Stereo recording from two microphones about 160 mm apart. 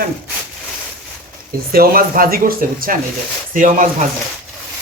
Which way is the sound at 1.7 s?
65° right (ahead or behind).